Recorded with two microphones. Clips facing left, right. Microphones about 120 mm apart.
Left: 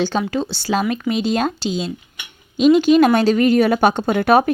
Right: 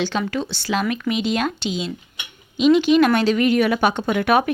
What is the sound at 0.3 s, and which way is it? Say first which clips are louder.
Speech: left 3 dB; 35° left (ahead or behind).